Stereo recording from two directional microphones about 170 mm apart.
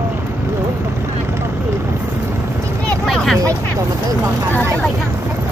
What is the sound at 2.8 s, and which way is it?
Vehicle, centre (ahead or behind).